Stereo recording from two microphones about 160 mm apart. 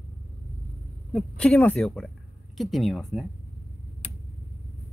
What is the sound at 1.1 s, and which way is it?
Speech, 5° left (ahead or behind).